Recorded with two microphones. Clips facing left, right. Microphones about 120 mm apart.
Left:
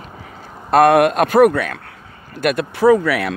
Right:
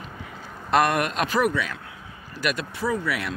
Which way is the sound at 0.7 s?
55° left (ahead or behind).